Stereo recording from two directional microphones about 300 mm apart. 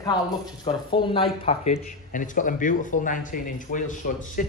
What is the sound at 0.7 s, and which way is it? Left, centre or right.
Speech, centre.